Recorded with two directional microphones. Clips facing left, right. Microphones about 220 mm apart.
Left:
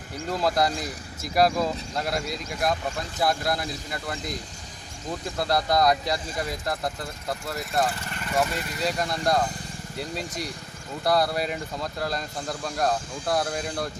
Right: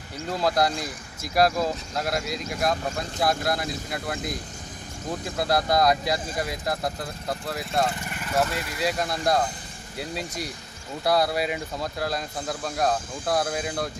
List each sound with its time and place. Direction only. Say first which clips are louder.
0.3 s speech: right 1 dB; centre (ahead or behind)
5.4 s speech: right 1 dB; centre (ahead or behind)